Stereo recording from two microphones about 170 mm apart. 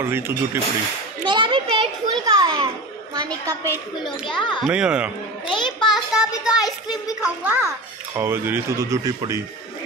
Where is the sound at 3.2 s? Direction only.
20° right (ahead or behind).